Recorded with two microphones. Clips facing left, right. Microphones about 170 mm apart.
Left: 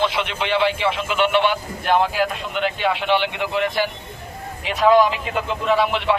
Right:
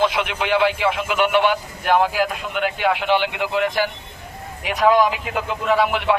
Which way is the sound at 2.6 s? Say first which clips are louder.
Right 1 dB; 15° right (ahead or behind).